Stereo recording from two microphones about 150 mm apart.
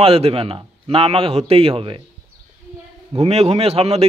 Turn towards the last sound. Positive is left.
turn(degrees=-40)  # may be behind; listen again after turning